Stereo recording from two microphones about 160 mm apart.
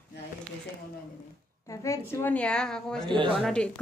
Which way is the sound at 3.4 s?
5° left (ahead or behind).